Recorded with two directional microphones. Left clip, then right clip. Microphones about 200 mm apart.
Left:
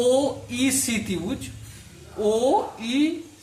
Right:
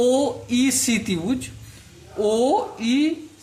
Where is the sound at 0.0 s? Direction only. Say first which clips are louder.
Right 1 dB; 40° right (ahead or behind).